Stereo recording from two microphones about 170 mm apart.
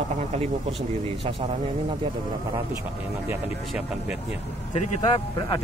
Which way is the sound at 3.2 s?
10° right (ahead or behind).